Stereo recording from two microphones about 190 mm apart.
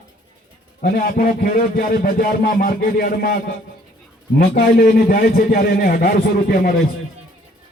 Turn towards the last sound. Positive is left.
turn(degrees=55)  # may be behind; listen again after turning